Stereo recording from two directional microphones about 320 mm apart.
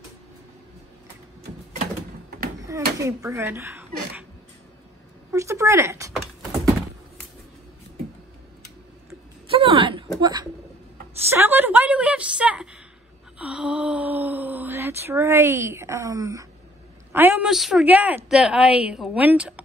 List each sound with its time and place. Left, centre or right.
3.0 s speech: centre
5.3 s speech: centre
9.5 s a sound: centre
11.2 s a woman's voice: centre
13.4 s a sound: centre
17.1 s a woman's voice: centre